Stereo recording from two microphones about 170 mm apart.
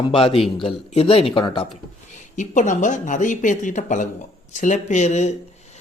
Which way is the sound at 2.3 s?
45° left (ahead or behind).